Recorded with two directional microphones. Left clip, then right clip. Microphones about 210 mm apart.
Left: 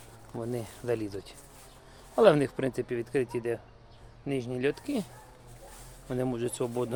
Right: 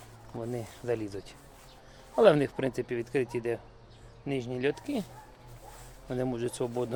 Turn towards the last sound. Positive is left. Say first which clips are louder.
# left 1 dB
turn(degrees=10)  # may be behind; listen again after turning